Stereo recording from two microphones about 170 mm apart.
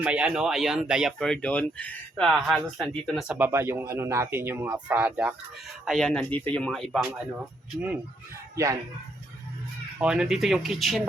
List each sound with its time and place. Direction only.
0.0 s speech: 5° right (ahead or behind)
3.3 s speech: 15° right (ahead or behind)
5.8 s speech: centre (ahead or behind)
8.5 s speech: 20° right (ahead or behind)
10.0 s speech: 5° right (ahead or behind)